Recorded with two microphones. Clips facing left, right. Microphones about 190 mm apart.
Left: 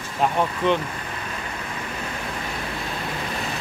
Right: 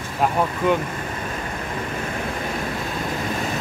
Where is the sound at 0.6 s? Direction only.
10° right (ahead or behind).